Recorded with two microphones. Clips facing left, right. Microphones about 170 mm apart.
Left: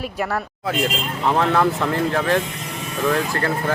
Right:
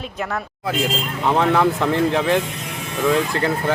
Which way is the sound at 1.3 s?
10° right (ahead or behind).